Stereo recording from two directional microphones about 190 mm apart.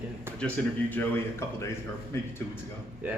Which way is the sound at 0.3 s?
5° left (ahead or behind).